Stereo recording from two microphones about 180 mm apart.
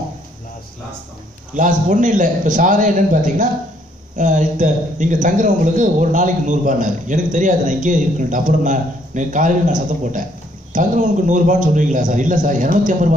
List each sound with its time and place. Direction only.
1.5 s a man's voice: 45° right (ahead or behind)